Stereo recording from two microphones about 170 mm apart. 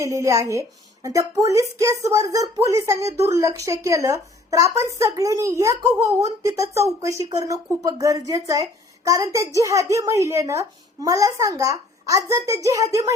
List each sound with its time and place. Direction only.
0.0 s speech: 20° right (ahead or behind)